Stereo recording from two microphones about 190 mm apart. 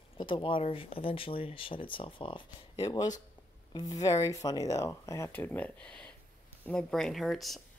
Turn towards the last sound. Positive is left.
turn(degrees=0)  # may be behind; listen again after turning